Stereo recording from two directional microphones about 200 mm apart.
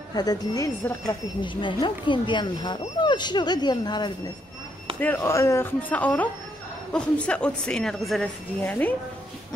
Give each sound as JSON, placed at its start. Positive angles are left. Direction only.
{"t": 0.1, "sound": "speech", "side_deg": 20}